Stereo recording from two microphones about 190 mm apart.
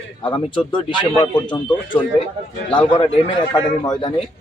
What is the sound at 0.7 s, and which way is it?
Speech, 25° left (ahead or behind).